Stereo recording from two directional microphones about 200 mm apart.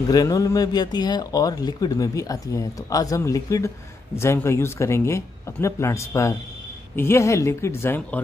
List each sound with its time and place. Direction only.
0.1 s speech: 20° left (ahead or behind)